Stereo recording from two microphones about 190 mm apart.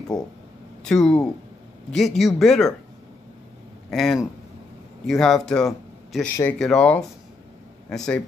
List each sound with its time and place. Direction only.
0.1 s speech: 20° left (ahead or behind)
0.8 s speech: 5° left (ahead or behind)
3.9 s a man's voice: centre (ahead or behind)